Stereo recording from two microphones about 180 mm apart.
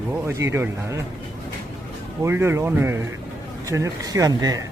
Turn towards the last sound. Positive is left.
turn(degrees=-20)  # may be behind; listen again after turning